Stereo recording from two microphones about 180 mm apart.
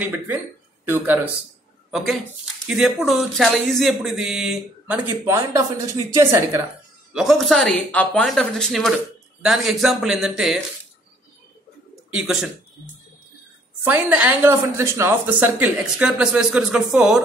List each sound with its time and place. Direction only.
0.0 s speech: 10° right (ahead or behind)
1.9 s speech: centre (ahead or behind); by 6.6 s 15° right (ahead or behind)
7.1 s speech: centre (ahead or behind)
12.1 s speech: 5° right (ahead or behind)
13.8 s speech: 10° right (ahead or behind)